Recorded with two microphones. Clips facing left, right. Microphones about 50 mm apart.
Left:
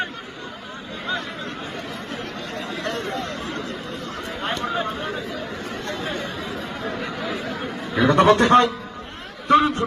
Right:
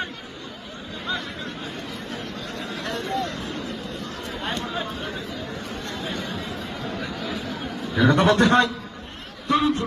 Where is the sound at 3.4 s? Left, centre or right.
Left.